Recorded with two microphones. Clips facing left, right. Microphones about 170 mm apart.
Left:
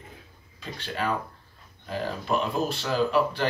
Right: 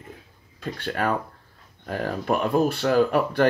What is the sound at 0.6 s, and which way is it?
Speech, 55° right (ahead or behind).